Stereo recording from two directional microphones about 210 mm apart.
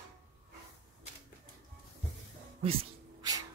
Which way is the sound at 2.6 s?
25° right (ahead or behind).